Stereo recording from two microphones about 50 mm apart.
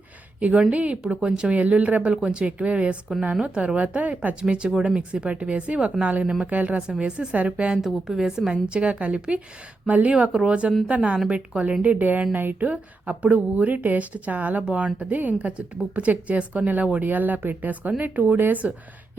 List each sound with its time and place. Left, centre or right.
0.3 s a woman's voice: right
4.4 s a woman's voice: centre
7.0 s a woman's voice: centre
8.0 s a woman's voice: centre
8.4 s a woman's voice: right
11.8 s a woman's voice: right